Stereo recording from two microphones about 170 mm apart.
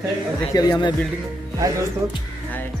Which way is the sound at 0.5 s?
25° left (ahead or behind).